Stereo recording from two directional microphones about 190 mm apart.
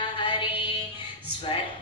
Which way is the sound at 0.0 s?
25° left (ahead or behind).